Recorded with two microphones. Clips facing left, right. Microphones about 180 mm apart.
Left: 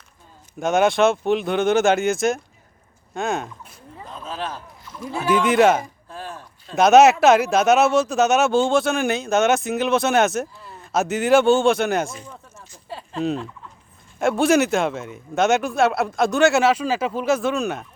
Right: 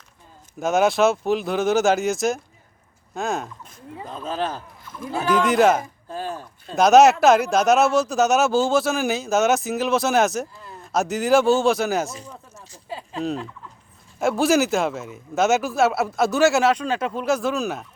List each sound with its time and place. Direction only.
0.6 s speech: centre (ahead or behind)
4.1 s speech: 40° right (ahead or behind)
5.2 s speech: centre (ahead or behind)
12.9 s fowl: centre (ahead or behind)
14.2 s speech: centre (ahead or behind)